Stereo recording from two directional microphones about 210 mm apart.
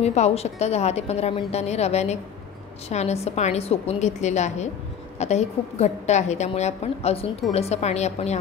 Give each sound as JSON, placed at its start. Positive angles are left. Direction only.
{"t": 0.0, "sound": "a woman's voice", "side_deg": 30}